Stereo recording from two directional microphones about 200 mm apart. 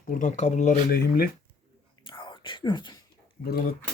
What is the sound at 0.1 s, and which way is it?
Speech, 40° left (ahead or behind).